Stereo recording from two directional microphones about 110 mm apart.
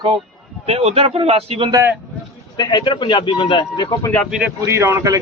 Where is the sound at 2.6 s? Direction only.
40° left (ahead or behind).